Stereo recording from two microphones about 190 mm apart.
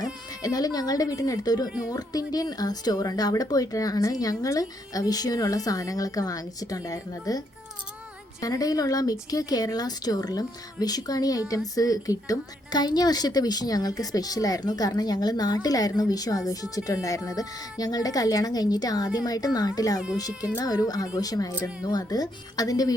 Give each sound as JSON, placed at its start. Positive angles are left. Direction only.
{"t": 0.4, "sound": "speech", "side_deg": 20}